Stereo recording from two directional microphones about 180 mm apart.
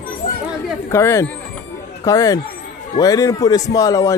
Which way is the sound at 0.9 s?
15° left (ahead or behind).